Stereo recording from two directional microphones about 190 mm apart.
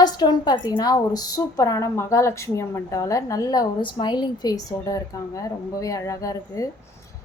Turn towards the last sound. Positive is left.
turn(degrees=15)  # may be behind; listen again after turning